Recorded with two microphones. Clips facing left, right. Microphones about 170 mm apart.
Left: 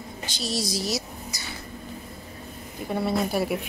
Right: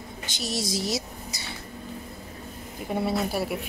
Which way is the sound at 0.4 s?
20° right (ahead or behind).